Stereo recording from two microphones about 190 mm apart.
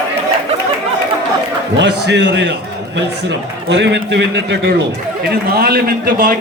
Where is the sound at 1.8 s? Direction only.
65° right (ahead or behind).